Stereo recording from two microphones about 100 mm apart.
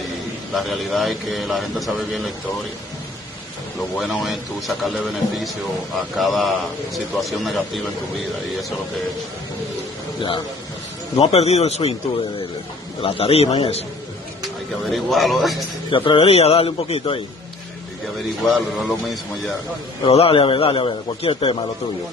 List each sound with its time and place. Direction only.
0.6 s a man's voice: centre (ahead or behind)
4.0 s a man's voice: centre (ahead or behind)
11.1 s speech: 90° left
13.0 s a man's voice: 80° left
14.9 s a man's voice: centre (ahead or behind)
15.9 s a man's voice: 60° left (ahead or behind)
18.4 s a man's voice: centre (ahead or behind)
20.1 s a man's voice: 75° left (ahead or behind)